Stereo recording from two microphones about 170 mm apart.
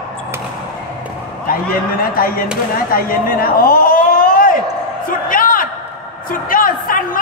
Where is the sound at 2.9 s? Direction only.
60° left (ahead or behind).